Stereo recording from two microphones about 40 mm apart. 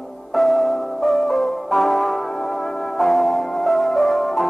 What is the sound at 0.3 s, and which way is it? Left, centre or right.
Music, centre.